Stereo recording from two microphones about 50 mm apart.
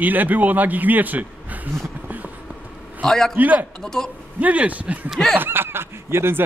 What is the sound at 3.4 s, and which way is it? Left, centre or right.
Speech, right.